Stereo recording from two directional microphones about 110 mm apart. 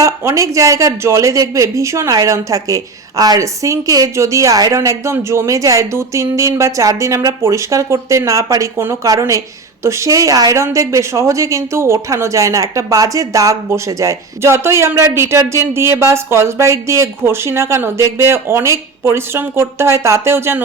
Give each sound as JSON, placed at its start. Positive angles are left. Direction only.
{"t": 0.0, "sound": "a woman's voice", "side_deg": -30}